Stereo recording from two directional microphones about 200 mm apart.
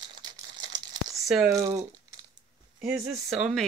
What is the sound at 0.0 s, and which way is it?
Crumpling, 20° right (ahead or behind).